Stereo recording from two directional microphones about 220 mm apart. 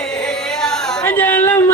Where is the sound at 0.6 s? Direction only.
5° left (ahead or behind).